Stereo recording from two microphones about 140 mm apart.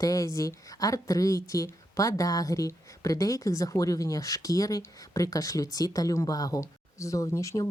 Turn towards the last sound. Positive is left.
turn(degrees=20)  # may be behind; listen again after turning